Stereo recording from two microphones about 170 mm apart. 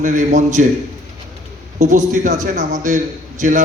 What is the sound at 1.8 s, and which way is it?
A man's voice, 45° right (ahead or behind).